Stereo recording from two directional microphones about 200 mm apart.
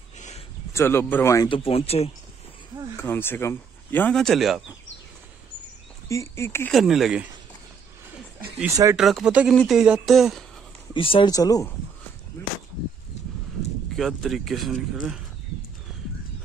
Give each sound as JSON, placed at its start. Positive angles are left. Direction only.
{"t": 0.7, "sound": "speech", "side_deg": 10}
{"t": 3.0, "sound": "speech", "side_deg": 10}
{"t": 6.0, "sound": "speech", "side_deg": 15}
{"t": 6.7, "sound": "speech", "side_deg": 0}
{"t": 8.5, "sound": "speech", "side_deg": -15}
{"t": 8.9, "sound": "speech", "side_deg": 0}
{"t": 10.9, "sound": "speech", "side_deg": 25}
{"t": 13.9, "sound": "speech", "side_deg": 0}